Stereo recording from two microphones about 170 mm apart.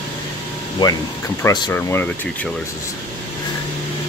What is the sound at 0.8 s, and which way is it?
Speech, 25° left (ahead or behind).